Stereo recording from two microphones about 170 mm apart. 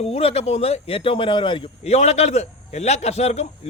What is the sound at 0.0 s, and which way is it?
Speech, 35° left (ahead or behind).